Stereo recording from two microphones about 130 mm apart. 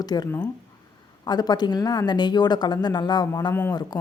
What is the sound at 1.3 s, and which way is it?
A woman's voice, 30° left (ahead or behind).